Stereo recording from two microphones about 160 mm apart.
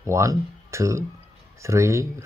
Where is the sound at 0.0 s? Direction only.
20° right (ahead or behind).